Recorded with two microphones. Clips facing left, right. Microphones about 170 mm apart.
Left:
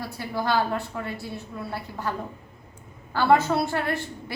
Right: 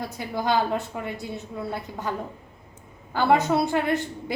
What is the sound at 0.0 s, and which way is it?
A woman's voice, 20° right (ahead or behind).